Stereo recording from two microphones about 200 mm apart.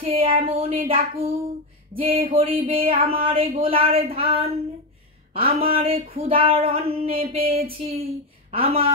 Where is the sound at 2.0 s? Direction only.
25° right (ahead or behind).